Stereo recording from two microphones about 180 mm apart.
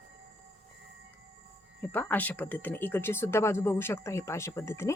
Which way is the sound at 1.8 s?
10° left (ahead or behind).